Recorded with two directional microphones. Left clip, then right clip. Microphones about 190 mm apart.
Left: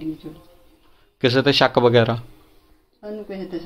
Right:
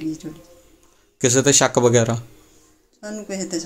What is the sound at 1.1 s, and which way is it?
Speech, 10° right (ahead or behind).